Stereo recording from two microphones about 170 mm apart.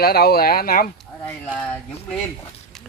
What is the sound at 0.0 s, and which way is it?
Speech, 65° left (ahead or behind).